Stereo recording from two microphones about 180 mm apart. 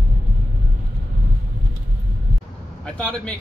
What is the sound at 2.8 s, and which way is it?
Speech, 5° left (ahead or behind).